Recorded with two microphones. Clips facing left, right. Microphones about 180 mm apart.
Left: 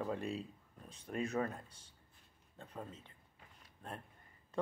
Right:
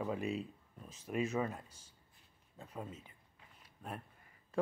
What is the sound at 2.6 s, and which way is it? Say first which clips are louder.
Speech: right 2 dB; 10° right (ahead or behind).